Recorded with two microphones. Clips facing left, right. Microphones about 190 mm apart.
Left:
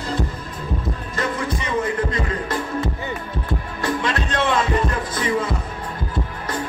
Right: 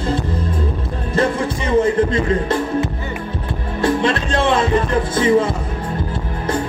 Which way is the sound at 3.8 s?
30° right (ahead or behind).